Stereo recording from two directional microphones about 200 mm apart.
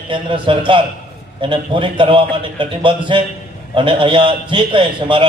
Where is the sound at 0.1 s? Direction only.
25° right (ahead or behind).